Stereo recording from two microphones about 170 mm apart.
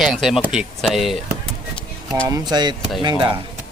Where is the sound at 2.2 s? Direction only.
25° right (ahead or behind).